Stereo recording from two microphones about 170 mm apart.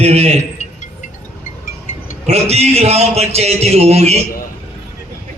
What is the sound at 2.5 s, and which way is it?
A man's voice, 40° right (ahead or behind).